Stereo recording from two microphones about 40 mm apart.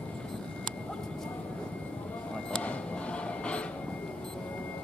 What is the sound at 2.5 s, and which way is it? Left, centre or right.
Vehicle, left.